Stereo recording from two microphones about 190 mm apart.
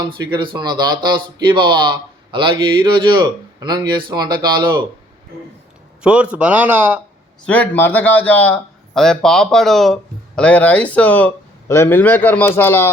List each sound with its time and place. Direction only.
0.1 s speech: 25° right (ahead or behind)
6.0 s speech: 5° right (ahead or behind)
7.4 s speech: 10° left (ahead or behind)